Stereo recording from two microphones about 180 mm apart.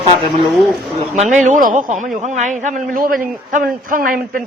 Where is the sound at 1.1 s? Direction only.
45° right (ahead or behind).